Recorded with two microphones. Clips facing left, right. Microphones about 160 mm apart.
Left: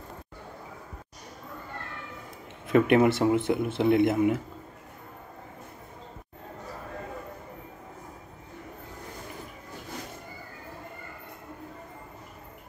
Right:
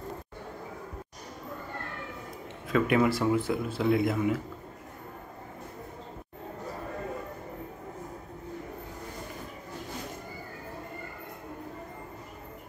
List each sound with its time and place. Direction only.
2.7 s speech: 25° left (ahead or behind)